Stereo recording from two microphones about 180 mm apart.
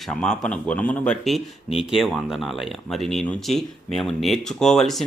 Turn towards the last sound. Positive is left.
turn(degrees=0)  # may be behind; listen again after turning